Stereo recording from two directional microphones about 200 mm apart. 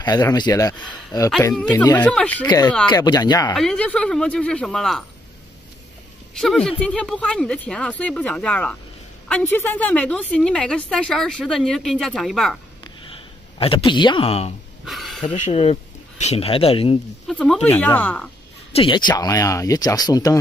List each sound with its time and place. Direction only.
0.0 s speech: 20° left (ahead or behind)
1.5 s a woman's voice: 5° left (ahead or behind)
2.4 s speech: 20° left (ahead or behind)
3.5 s a woman's voice: 5° left (ahead or behind)
6.3 s a woman's voice: centre (ahead or behind)
13.1 s speech: 25° left (ahead or behind)
14.9 s a sound: centre (ahead or behind)
15.2 s speech: 30° left (ahead or behind)
17.3 s a woman's voice: 5° left (ahead or behind)
18.7 s speech: 25° left (ahead or behind)